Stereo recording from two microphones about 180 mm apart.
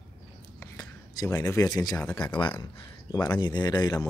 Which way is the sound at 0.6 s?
15° left (ahead or behind).